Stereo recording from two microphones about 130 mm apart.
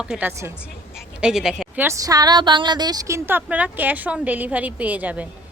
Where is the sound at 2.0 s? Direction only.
30° right (ahead or behind).